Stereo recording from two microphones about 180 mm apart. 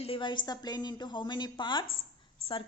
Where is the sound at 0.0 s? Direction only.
30° left (ahead or behind).